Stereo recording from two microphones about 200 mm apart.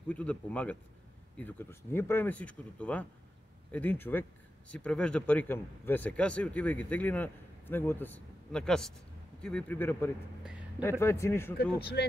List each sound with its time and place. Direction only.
0.1 s speech: 5° left (ahead or behind)
11.5 s speech: 55° left (ahead or behind)